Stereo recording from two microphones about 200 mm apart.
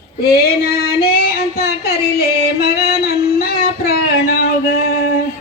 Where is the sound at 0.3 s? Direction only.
50° left (ahead or behind).